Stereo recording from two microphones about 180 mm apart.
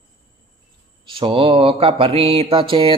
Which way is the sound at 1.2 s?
30° right (ahead or behind).